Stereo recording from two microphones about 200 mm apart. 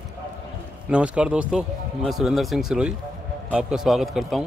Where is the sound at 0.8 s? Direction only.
5° right (ahead or behind).